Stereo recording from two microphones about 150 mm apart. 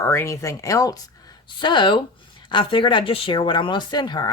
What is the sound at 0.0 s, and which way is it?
Speech, 15° left (ahead or behind).